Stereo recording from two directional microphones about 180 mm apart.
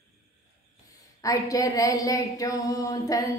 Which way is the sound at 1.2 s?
20° left (ahead or behind).